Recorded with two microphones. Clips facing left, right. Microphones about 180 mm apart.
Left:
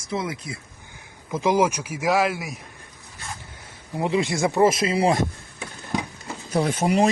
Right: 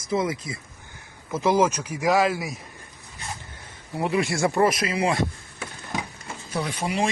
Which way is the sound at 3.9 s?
20° left (ahead or behind).